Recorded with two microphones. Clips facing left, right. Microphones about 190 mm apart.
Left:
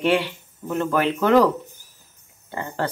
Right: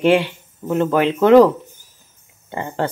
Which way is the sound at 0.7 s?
25° right (ahead or behind).